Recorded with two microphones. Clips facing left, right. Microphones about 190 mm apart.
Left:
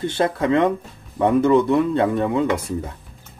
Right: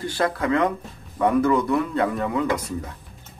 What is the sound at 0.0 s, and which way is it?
Speech, 25° left (ahead or behind).